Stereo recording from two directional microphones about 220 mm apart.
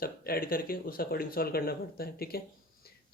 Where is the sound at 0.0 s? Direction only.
40° left (ahead or behind).